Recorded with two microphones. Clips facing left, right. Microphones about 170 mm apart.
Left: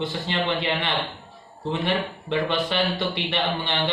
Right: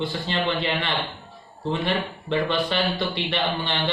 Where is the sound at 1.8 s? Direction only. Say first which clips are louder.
Even; 15° left (ahead or behind).